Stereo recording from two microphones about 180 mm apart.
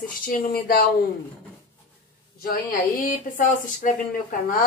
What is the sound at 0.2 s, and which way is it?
Speech, 50° left (ahead or behind).